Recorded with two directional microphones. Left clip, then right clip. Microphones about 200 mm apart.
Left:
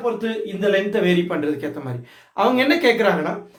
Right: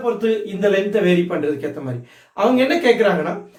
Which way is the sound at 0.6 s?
15° left (ahead or behind).